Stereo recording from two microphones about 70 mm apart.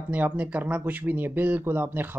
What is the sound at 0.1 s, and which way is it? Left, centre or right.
Speech, right.